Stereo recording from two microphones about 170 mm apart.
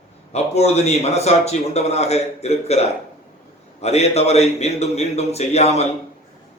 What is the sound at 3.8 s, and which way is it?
A man's voice, 40° left (ahead or behind).